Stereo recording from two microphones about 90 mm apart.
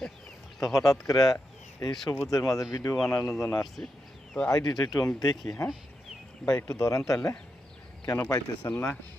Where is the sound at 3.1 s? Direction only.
30° left (ahead or behind).